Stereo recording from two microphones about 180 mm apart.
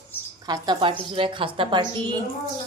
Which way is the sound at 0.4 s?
20° right (ahead or behind).